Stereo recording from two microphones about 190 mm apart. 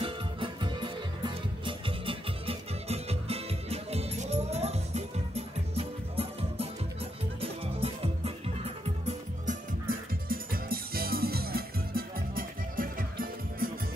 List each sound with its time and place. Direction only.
0.0 s music: 25° right (ahead or behind)
9.0 s music: 45° right (ahead or behind)